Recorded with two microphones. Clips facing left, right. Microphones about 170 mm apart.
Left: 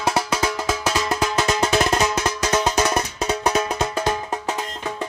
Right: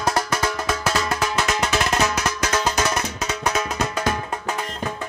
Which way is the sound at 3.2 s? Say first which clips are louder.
Left 4 dB; 30° left (ahead or behind).